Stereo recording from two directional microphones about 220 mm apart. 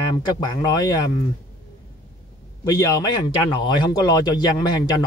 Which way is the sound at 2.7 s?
15° left (ahead or behind).